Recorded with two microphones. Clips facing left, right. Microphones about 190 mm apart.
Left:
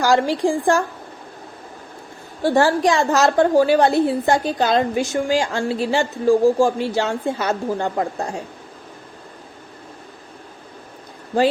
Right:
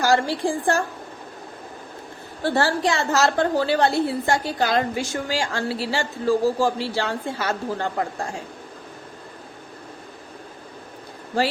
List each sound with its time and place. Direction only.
0.0 s a woman's voice: 15° left (ahead or behind)
2.4 s a woman's voice: 15° left (ahead or behind)